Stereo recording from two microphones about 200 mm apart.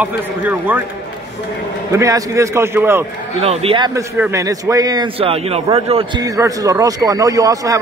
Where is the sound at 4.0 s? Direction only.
15° right (ahead or behind).